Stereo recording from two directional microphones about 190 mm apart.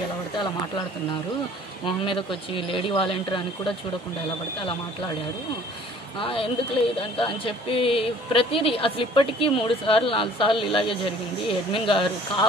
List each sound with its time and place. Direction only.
1.9 s speech: 25° left (ahead or behind)
6.2 s speech: 25° left (ahead or behind)